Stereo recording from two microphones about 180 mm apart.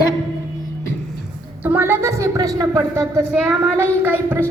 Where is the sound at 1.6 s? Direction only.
10° right (ahead or behind).